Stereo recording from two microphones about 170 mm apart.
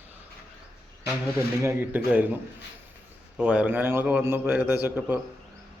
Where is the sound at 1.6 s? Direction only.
10° right (ahead or behind).